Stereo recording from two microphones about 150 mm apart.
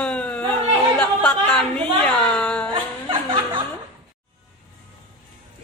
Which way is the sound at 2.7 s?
35° right (ahead or behind).